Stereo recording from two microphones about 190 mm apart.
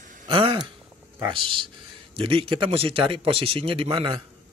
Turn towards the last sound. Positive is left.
turn(degrees=-30)  # may be behind; listen again after turning